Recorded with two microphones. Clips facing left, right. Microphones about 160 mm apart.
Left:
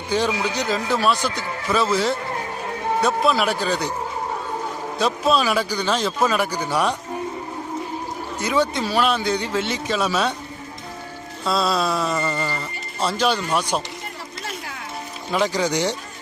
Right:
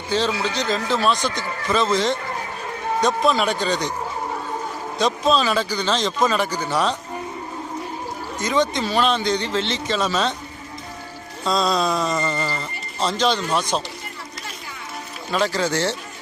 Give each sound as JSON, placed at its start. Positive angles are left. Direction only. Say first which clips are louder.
{"t": 0.1, "sound": "speech", "louder": "even", "side_deg": 15}
{"t": 4.9, "sound": "speech", "louder": "right 1 dB", "side_deg": 5}
{"t": 8.4, "sound": "speech", "louder": "even", "side_deg": 10}
{"t": 11.4, "sound": "mantra", "louder": "right 1 dB", "side_deg": 5}
{"t": 12.5, "sound": "speech", "louder": "even", "side_deg": 10}
{"t": 15.3, "sound": "speech", "louder": "even", "side_deg": 15}